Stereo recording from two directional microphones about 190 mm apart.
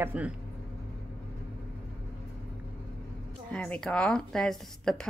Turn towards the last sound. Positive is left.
turn(degrees=5)  # may be behind; listen again after turning